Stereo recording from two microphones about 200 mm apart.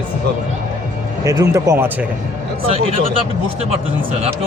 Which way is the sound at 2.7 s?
30° right (ahead or behind).